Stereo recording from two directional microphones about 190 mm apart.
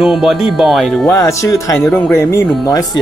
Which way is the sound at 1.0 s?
15° left (ahead or behind).